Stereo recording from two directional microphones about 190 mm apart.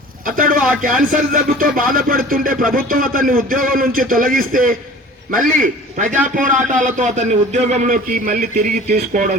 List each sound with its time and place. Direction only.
0.3 s a man's voice: 50° right (ahead or behind)